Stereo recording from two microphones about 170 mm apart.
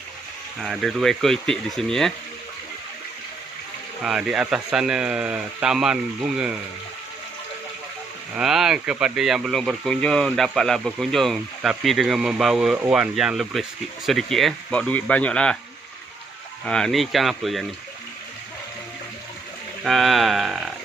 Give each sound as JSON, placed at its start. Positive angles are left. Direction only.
{"t": 0.6, "sound": "speech", "side_deg": 0}
{"t": 4.0, "sound": "speech", "side_deg": -5}
{"t": 8.4, "sound": "speech", "side_deg": -5}
{"t": 16.6, "sound": "speech", "side_deg": 5}
{"t": 19.8, "sound": "speech", "side_deg": 0}